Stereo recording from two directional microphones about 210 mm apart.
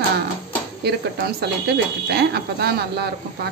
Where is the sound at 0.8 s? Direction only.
50° right (ahead or behind).